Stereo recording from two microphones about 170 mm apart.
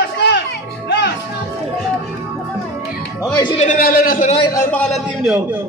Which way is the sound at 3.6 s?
55° left (ahead or behind).